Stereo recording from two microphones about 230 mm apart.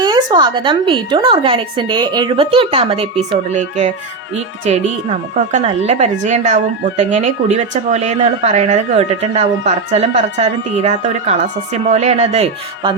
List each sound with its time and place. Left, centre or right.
0.0 s a woman's voice: centre